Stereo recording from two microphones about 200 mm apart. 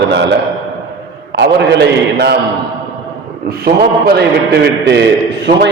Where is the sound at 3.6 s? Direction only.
50° right (ahead or behind).